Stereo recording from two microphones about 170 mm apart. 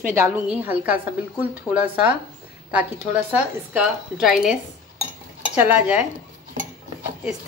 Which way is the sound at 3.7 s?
5° right (ahead or behind).